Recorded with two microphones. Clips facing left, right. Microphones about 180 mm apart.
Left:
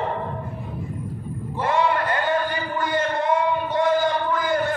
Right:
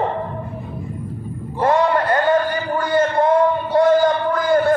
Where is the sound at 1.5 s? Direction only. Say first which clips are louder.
Right 5 dB; 40° right (ahead or behind).